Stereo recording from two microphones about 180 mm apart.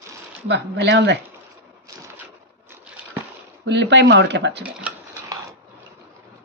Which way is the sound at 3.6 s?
80° right.